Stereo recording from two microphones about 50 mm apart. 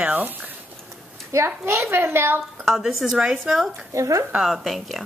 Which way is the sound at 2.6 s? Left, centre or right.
Centre.